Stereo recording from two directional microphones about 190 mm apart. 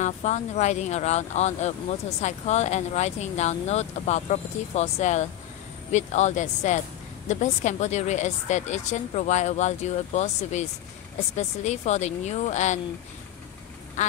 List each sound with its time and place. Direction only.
0.0 s speech: 35° left (ahead or behind)
14.0 s quack: 40° left (ahead or behind)